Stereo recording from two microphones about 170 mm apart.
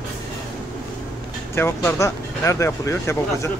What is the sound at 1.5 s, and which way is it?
Speech, 15° left (ahead or behind).